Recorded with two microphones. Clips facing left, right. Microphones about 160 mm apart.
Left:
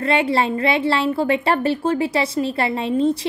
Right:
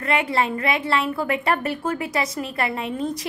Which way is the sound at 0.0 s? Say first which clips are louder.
Left 4 dB; 30° left (ahead or behind).